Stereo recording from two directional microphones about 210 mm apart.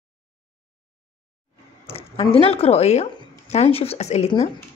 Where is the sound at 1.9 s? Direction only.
25° left (ahead or behind).